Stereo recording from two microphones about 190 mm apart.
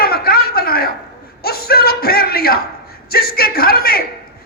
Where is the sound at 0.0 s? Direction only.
55° left (ahead or behind).